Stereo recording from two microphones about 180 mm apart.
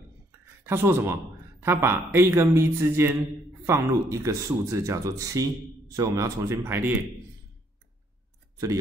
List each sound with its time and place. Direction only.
0.7 s a man's voice: 15° right (ahead or behind)